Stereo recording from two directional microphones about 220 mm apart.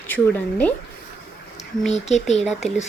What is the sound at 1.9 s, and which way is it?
Speech, 30° left (ahead or behind).